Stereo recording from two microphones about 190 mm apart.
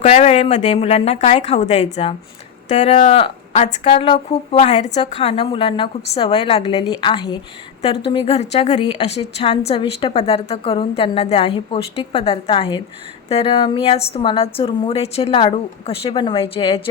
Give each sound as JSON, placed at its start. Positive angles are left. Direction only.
{"t": 0.0, "sound": "a woman's voice", "side_deg": 35}